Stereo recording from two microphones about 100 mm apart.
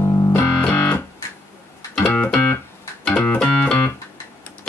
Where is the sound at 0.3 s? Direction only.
15° left (ahead or behind).